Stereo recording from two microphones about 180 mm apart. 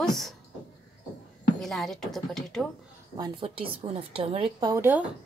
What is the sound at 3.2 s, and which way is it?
A woman's voice, 30° right (ahead or behind).